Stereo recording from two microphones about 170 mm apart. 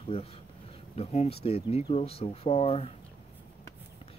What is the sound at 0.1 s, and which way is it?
Speech, 35° left (ahead or behind).